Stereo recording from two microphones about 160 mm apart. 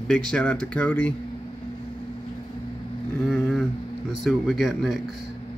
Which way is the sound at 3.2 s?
Centre (ahead or behind).